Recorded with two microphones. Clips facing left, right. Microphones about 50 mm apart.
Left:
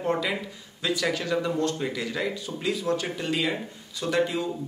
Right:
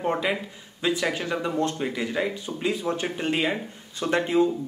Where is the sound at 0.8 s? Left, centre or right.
Right.